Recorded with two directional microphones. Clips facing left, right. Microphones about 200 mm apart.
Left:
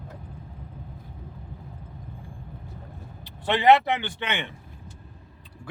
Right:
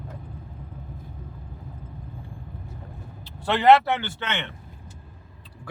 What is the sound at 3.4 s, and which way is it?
A man's voice, 15° left (ahead or behind).